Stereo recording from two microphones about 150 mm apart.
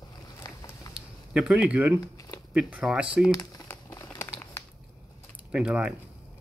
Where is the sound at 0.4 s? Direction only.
25° left (ahead or behind).